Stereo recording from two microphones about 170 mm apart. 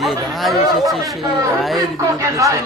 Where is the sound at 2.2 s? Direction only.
20° right (ahead or behind).